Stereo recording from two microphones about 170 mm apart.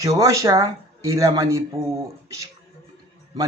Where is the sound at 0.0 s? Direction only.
20° right (ahead or behind).